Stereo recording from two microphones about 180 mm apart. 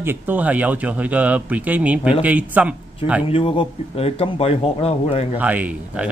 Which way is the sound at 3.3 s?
30° left (ahead or behind).